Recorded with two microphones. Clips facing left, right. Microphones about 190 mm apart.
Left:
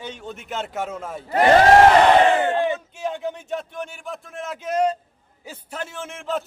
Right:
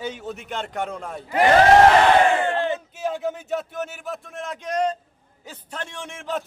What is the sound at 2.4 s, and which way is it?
Battle cry, 20° left (ahead or behind).